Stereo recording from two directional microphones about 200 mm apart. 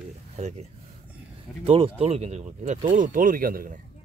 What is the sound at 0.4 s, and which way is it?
Speech, 35° right (ahead or behind).